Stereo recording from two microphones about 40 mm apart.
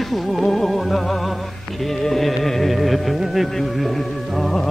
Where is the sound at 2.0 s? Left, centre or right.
Centre.